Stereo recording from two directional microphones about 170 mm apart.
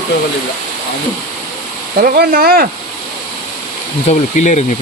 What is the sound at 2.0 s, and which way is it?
Speech, 60° right (ahead or behind).